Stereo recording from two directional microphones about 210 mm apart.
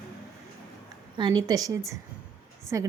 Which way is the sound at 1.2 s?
20° right (ahead or behind).